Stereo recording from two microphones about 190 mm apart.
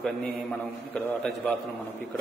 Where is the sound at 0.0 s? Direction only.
5° left (ahead or behind).